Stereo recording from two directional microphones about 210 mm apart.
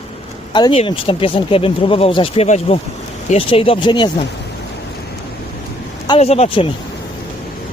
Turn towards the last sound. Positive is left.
turn(degrees=25)  # may be behind; listen again after turning